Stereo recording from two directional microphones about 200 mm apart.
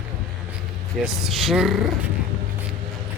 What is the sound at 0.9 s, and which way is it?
Speech, centre (ahead or behind).